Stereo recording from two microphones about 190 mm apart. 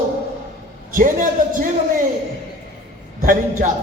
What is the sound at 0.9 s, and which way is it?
Speech, 45° right (ahead or behind).